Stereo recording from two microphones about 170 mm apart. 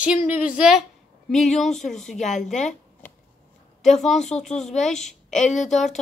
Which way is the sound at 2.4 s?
45° left (ahead or behind).